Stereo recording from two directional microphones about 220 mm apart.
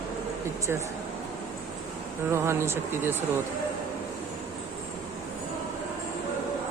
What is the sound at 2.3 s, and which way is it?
Speech, 10° right (ahead or behind).